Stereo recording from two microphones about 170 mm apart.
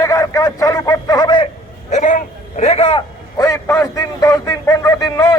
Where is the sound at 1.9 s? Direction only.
45° left (ahead or behind).